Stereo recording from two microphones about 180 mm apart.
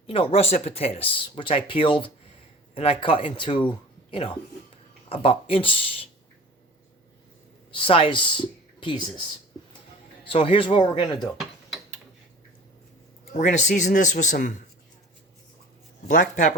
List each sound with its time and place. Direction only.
0.1 s speech: 30° left (ahead or behind)
3.7 s a sound: 30° left (ahead or behind)
5.0 s speech: 30° left (ahead or behind)
7.7 s speech: 30° left (ahead or behind)
10.2 s speech: 30° left (ahead or behind)
13.3 s speech: 40° left (ahead or behind)
16.0 s speech: 45° left (ahead or behind)